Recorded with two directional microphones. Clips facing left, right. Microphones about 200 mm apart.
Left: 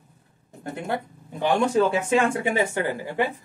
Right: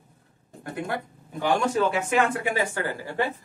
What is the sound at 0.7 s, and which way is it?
A woman's voice, 25° left (ahead or behind).